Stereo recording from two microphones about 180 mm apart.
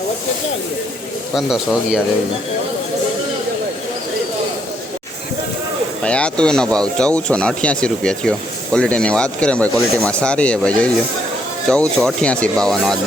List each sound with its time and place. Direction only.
1.4 s speech: centre (ahead or behind)
6.0 s speech: 5° left (ahead or behind)